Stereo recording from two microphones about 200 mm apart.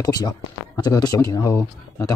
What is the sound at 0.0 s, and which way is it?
Speech, 20° left (ahead or behind).